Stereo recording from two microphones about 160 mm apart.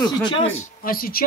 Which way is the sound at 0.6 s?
65° left (ahead or behind).